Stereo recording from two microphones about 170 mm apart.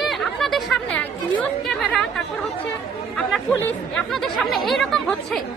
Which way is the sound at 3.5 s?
5° left (ahead or behind).